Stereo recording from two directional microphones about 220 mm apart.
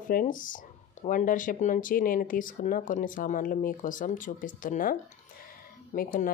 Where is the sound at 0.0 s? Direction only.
40° left (ahead or behind).